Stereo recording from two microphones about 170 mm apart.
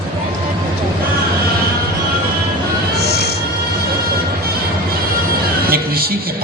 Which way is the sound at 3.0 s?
70° left (ahead or behind).